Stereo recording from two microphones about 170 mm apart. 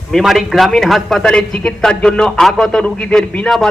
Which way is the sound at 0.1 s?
Centre (ahead or behind).